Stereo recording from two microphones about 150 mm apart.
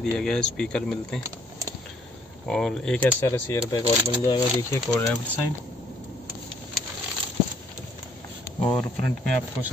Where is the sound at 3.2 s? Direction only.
20° left (ahead or behind).